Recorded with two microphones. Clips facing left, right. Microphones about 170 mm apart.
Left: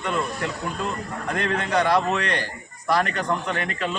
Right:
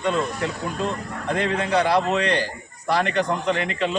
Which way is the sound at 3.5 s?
25° right (ahead or behind).